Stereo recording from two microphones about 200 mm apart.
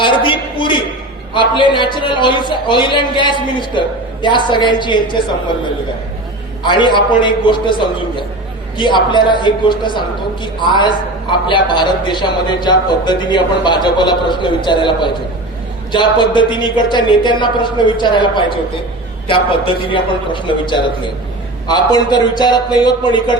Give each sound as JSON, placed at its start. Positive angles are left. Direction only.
{"t": 0.0, "sound": "a sound", "side_deg": 25}
{"t": 1.3, "sound": "a man's voice", "side_deg": 25}
{"t": 6.6, "sound": "a man's voice", "side_deg": 20}